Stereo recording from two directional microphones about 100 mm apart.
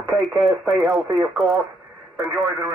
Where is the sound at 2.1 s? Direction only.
5° right (ahead or behind).